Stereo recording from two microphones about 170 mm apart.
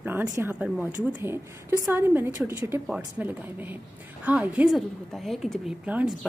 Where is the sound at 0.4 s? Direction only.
10° right (ahead or behind).